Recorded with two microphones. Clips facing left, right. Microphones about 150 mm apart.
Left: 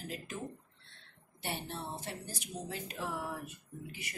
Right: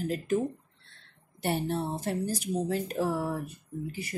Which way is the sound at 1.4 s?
45° right (ahead or behind).